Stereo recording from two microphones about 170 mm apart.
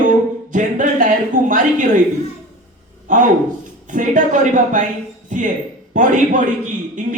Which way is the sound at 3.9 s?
50° right (ahead or behind).